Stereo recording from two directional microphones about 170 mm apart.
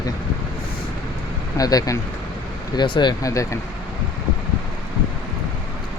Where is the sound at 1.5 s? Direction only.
20° left (ahead or behind).